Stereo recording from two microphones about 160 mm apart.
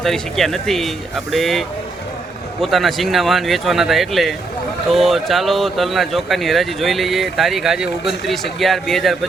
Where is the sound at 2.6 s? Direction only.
Centre (ahead or behind).